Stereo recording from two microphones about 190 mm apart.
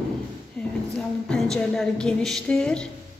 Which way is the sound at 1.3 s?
5° left (ahead or behind).